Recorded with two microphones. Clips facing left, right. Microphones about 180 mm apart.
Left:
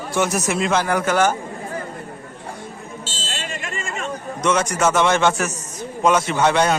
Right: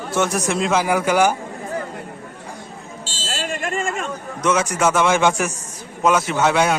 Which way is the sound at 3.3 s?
45° right (ahead or behind).